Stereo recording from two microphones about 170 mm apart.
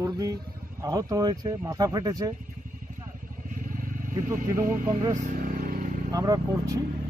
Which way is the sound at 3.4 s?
55° right (ahead or behind).